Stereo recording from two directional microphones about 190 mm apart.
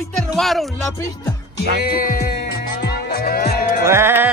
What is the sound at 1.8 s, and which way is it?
Music, 55° left (ahead or behind).